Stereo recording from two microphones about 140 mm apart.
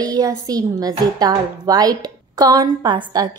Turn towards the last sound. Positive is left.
turn(degrees=-30)  # may be behind; listen again after turning